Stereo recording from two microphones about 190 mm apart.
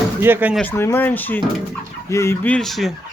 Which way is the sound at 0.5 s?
10° left (ahead or behind).